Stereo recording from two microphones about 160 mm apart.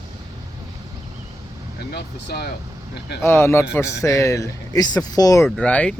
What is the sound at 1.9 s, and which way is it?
Speech, 85° left.